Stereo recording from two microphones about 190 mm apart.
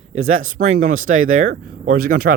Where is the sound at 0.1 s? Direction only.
40° right (ahead or behind).